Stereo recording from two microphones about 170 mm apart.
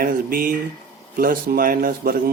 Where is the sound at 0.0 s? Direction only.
55° right (ahead or behind).